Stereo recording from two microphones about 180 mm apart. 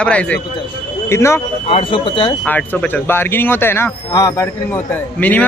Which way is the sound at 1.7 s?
30° left (ahead or behind).